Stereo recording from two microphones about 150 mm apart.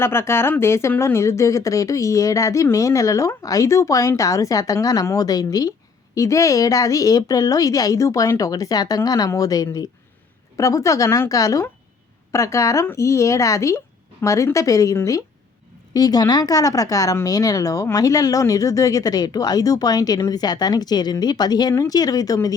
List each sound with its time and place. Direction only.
0.0 s speech: 15° left (ahead or behind)